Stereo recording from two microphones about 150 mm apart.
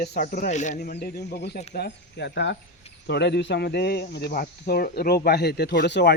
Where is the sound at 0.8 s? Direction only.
90° left.